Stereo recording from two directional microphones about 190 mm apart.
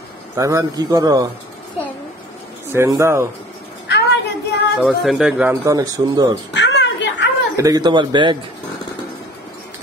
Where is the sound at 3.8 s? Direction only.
65° left (ahead or behind).